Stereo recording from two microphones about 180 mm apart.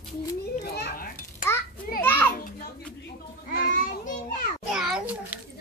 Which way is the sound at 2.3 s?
50° left (ahead or behind).